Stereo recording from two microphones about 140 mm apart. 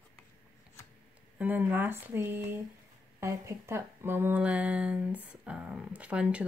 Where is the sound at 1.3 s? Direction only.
15° right (ahead or behind).